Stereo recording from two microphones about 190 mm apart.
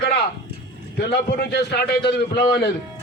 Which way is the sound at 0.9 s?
60° left (ahead or behind).